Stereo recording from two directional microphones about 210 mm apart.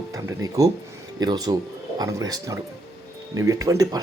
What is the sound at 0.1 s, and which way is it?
Speech, 15° right (ahead or behind).